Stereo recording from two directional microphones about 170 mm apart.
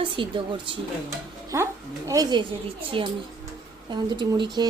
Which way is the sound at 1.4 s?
20° right (ahead or behind).